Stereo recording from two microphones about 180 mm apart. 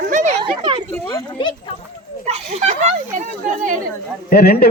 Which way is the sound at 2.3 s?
35° right (ahead or behind).